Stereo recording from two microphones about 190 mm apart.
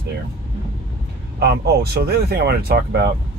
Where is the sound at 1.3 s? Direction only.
55° right (ahead or behind).